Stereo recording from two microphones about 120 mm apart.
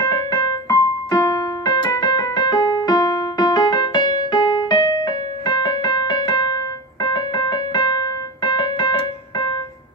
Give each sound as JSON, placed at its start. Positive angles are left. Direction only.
{"t": 0.0, "sound": "keyboard", "side_deg": 35}